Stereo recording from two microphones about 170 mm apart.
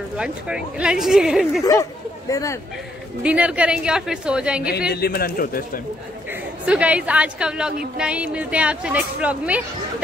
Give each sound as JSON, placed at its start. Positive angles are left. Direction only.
{"t": 0.7, "sound": "a woman's voice", "side_deg": -5}
{"t": 1.6, "sound": "speech", "side_deg": 20}
{"t": 3.3, "sound": "a woman's voice", "side_deg": -10}
{"t": 4.9, "sound": "a man's voice", "side_deg": 65}
{"t": 6.6, "sound": "speech", "side_deg": -10}